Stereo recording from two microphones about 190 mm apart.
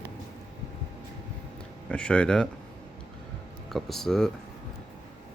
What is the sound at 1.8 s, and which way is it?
Speech, 5° left (ahead or behind).